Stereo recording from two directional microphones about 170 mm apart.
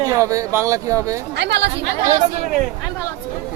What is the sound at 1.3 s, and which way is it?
Speech, 90° right.